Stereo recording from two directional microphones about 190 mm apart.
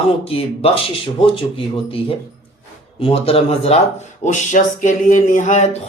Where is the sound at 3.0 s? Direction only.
30° left (ahead or behind).